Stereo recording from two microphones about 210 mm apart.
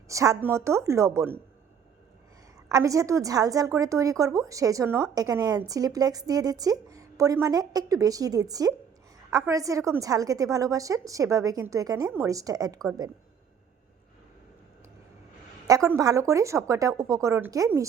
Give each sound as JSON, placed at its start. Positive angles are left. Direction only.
{"t": 0.1, "sound": "a woman's voice", "side_deg": -15}
{"t": 2.6, "sound": "a woman's voice", "side_deg": -15}
{"t": 15.6, "sound": "a woman's voice", "side_deg": -15}